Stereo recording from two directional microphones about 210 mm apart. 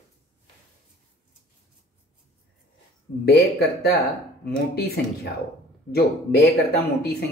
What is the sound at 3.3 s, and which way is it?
Speech, 50° left (ahead or behind).